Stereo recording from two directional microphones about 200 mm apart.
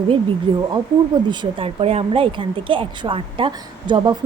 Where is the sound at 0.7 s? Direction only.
20° right (ahead or behind).